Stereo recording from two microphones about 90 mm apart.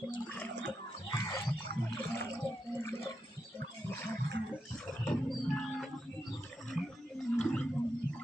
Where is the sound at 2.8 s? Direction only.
30° left (ahead or behind).